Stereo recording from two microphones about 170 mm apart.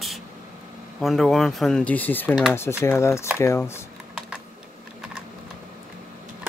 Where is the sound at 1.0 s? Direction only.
Centre (ahead or behind).